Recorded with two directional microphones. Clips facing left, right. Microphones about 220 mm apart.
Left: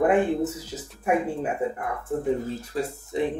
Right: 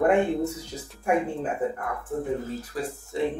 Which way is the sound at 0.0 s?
5° left (ahead or behind).